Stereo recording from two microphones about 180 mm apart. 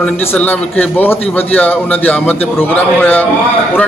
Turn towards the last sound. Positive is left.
turn(degrees=10)  # may be behind; listen again after turning